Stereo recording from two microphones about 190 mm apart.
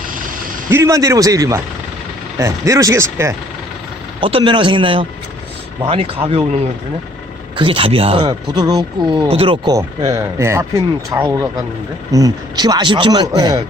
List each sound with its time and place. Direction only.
0.7 s speech: 15° right (ahead or behind)
4.2 s speech: 25° right (ahead or behind)
7.5 s speech: 25° right (ahead or behind)